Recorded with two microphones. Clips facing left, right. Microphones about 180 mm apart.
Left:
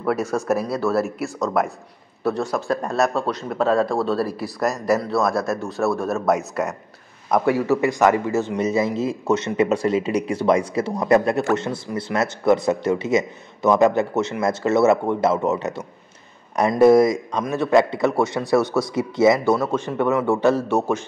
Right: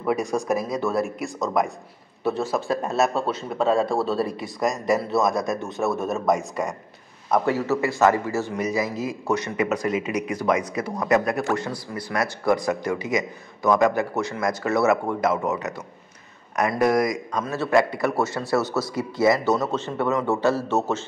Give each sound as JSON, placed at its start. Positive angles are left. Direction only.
{"t": 0.0, "sound": "speech", "side_deg": -15}
{"t": 0.9, "sound": "speech", "side_deg": 0}
{"t": 5.1, "sound": "a man's voice", "side_deg": -15}
{"t": 6.1, "sound": "a man's voice", "side_deg": 5}
{"t": 18.6, "sound": "speech", "side_deg": -5}
{"t": 18.9, "sound": "speech", "side_deg": 20}
{"t": 19.4, "sound": "a man's voice", "side_deg": 10}